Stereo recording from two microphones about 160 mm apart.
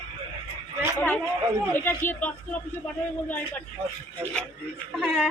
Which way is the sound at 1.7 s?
15° left (ahead or behind).